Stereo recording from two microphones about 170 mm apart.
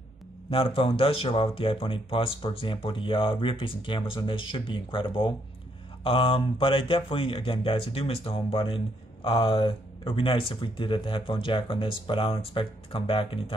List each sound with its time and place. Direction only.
0.5 s speech: 30° left (ahead or behind)